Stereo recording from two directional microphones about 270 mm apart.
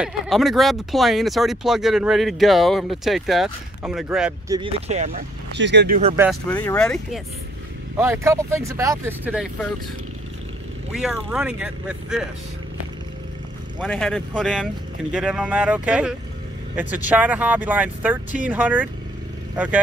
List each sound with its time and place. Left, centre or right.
0.0 s speech: centre
4.5 s speech: centre
5.5 s speech: right
6.5 s speech: centre
8.0 s speech: centre
10.9 s speech: centre
13.7 s speech: centre